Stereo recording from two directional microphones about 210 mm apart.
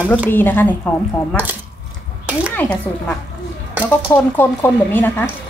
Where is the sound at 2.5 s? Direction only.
5° left (ahead or behind).